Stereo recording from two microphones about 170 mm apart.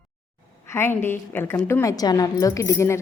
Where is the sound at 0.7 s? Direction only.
15° left (ahead or behind).